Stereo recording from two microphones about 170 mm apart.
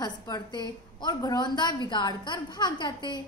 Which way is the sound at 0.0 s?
25° left (ahead or behind).